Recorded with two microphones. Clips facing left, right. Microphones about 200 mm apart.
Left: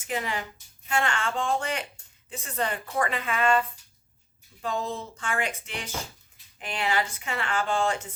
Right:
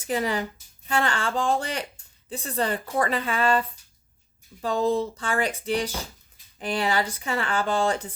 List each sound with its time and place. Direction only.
0.0 s a woman's voice: 35° right (ahead or behind)